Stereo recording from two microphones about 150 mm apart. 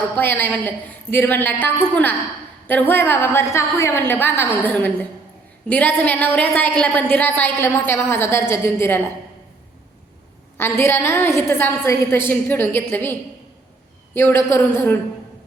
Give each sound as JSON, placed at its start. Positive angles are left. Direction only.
{"t": 0.2, "sound": "a woman's voice", "side_deg": 15}
{"t": 10.6, "sound": "a woman's voice", "side_deg": 15}